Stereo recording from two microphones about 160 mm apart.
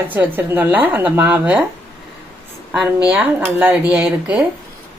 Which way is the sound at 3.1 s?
10° right (ahead or behind).